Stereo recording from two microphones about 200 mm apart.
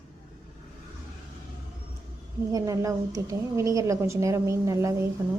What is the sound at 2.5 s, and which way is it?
A woman's voice, 15° right (ahead or behind).